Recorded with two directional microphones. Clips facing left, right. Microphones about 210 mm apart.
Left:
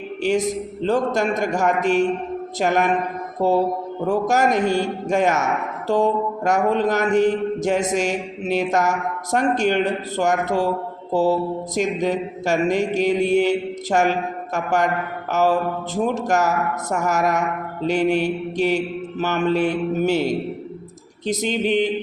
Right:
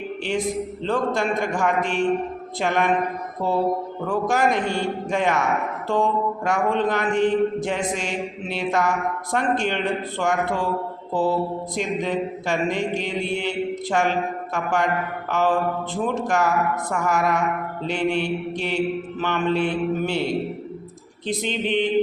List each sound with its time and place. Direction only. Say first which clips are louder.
0.2 s mantra: left 5 dB; 40° left (ahead or behind)
4.0 s mantra: left 3 dB; 45° left (ahead or behind)
21.2 s mantra: left 4 dB; 40° left (ahead or behind)